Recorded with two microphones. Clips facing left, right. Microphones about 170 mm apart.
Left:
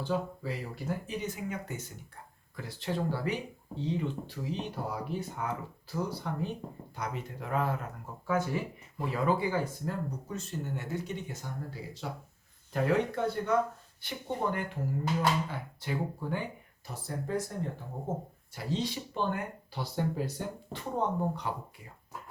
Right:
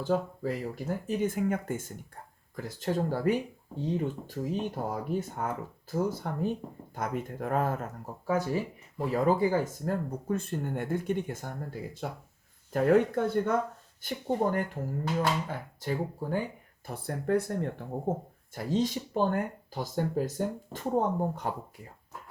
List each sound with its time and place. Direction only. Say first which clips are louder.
0.0 s speech: right 4 dB; 45° right (ahead or behind)
16.8 s speech: right 5 dB; 55° right (ahead or behind)
18.5 s speech: right 5 dB; 45° right (ahead or behind)